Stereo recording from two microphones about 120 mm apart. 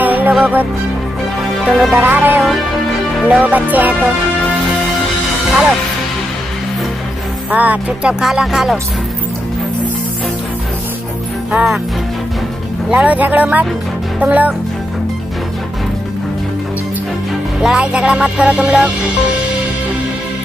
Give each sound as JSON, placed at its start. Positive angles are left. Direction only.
{"t": 0.0, "sound": "music", "side_deg": -15}
{"t": 2.0, "sound": "music", "side_deg": -15}
{"t": 7.5, "sound": "music", "side_deg": -10}
{"t": 11.5, "sound": "music", "side_deg": -10}
{"t": 12.9, "sound": "music", "side_deg": -10}
{"t": 17.6, "sound": "music", "side_deg": -5}